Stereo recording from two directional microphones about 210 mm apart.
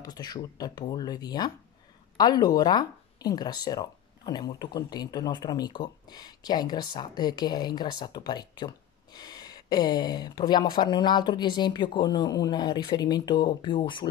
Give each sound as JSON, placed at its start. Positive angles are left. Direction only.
{"t": 0.0, "sound": "speech", "side_deg": 20}